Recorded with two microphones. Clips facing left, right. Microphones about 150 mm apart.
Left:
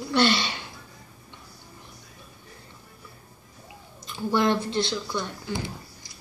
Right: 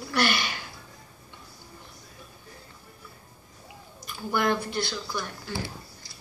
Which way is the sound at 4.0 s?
25° left (ahead or behind).